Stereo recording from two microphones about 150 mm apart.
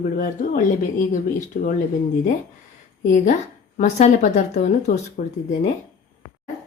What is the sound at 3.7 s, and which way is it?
A woman's voice, 55° left (ahead or behind).